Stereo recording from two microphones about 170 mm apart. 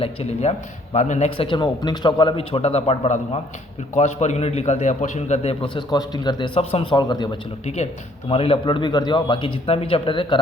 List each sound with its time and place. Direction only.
0.0 s a man's voice: 35° left (ahead or behind)